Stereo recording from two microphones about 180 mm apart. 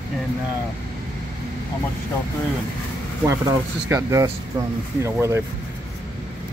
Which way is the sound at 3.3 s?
15° right (ahead or behind).